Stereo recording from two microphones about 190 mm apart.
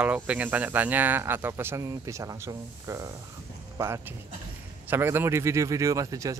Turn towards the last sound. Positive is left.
turn(degrees=-15)  # may be behind; listen again after turning